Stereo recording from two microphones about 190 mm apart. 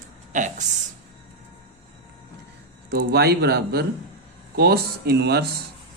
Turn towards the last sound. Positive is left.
turn(degrees=-60)  # may be behind; listen again after turning